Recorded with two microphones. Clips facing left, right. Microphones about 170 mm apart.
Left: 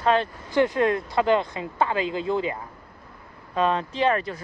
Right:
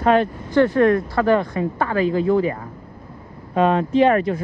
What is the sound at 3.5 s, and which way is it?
Speech, 50° right (ahead or behind).